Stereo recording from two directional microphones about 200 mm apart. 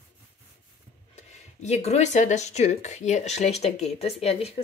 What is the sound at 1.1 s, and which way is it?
Speech, 35° left (ahead or behind).